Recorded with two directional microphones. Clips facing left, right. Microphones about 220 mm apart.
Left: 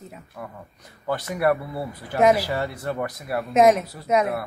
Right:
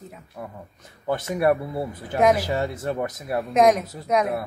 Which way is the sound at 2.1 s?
Centre (ahead or behind).